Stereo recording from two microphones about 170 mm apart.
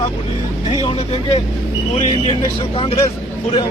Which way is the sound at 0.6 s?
30° left (ahead or behind).